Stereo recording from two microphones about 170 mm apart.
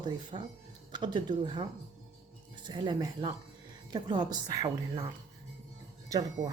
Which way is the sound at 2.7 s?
25° right (ahead or behind).